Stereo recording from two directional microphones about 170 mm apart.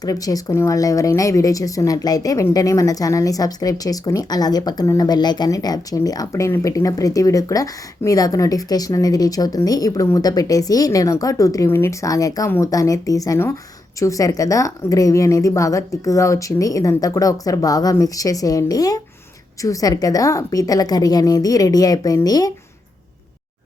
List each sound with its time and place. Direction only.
0.0 s speech: 20° left (ahead or behind)